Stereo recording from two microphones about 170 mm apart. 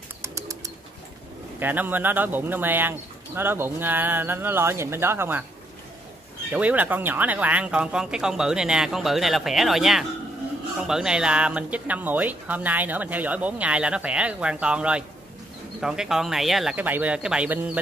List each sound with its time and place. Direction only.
0.2 s bird: 15° right (ahead or behind)
1.6 s speech: 10° right (ahead or behind)
6.5 s speech: 10° right (ahead or behind)